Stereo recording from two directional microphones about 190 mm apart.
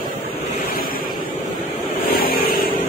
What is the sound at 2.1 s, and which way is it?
Vehicle, 50° left (ahead or behind).